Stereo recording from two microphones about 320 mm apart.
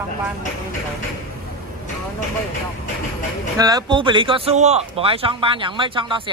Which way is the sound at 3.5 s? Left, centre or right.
Centre.